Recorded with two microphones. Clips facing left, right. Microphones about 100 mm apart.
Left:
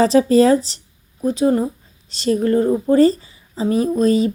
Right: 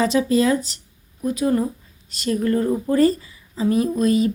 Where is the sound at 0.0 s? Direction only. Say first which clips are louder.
Left 5 dB; 35° left (ahead or behind).